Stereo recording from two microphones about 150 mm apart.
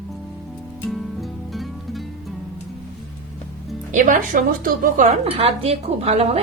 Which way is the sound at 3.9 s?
65° right (ahead or behind).